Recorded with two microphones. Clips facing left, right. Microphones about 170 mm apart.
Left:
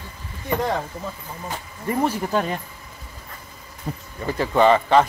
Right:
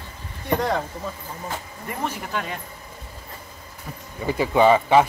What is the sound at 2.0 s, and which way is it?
Speech, 30° left (ahead or behind).